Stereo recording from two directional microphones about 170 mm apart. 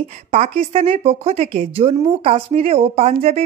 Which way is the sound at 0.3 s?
40° right (ahead or behind).